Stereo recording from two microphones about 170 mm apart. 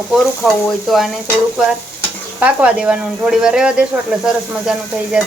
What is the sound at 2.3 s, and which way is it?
Speech, 5° right (ahead or behind).